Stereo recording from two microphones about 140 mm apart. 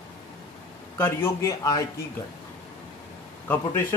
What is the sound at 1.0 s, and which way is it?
Speech, 20° left (ahead or behind).